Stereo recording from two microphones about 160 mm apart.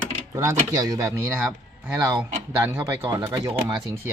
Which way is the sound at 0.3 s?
20° right (ahead or behind).